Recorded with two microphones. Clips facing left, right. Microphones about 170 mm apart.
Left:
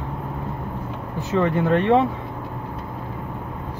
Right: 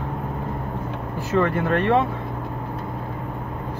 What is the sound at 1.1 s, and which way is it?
Speech, 15° left (ahead or behind).